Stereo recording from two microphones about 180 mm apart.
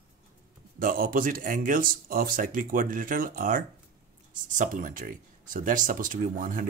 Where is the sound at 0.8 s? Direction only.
50° right (ahead or behind).